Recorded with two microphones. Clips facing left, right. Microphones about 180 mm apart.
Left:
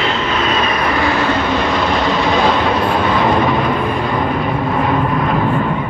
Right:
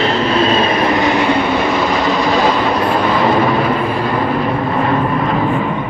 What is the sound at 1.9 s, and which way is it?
Vehicle, centre (ahead or behind).